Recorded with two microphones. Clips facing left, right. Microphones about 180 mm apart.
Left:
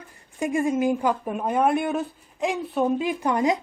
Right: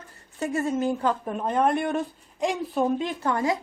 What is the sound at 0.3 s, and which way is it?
Speech, 15° left (ahead or behind).